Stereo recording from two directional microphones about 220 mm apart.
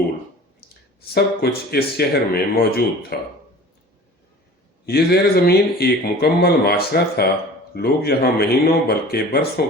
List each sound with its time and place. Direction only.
1.1 s speech: 45° left (ahead or behind)
4.9 s speech: 45° left (ahead or behind)